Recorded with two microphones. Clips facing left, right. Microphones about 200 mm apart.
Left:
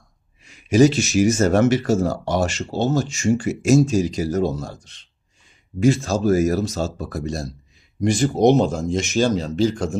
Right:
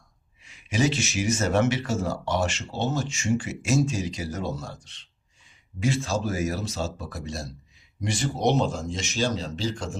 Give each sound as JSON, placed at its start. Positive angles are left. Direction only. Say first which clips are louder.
{"t": 0.4, "sound": "speech", "louder": "left 10 dB", "side_deg": 40}